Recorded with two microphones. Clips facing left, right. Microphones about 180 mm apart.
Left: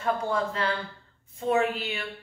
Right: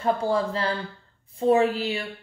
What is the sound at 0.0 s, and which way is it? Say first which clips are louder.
A woman's voice: right 4 dB; 35° right (ahead or behind).